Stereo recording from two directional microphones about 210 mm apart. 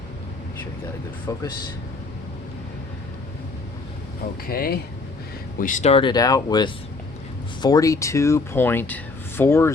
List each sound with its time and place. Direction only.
1.3 s speech: 15° left (ahead or behind)
4.4 s speech: 45° left (ahead or behind); by 9.7 s 10° left (ahead or behind)